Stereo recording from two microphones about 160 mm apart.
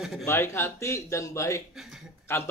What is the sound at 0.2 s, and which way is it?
Speech, 15° left (ahead or behind).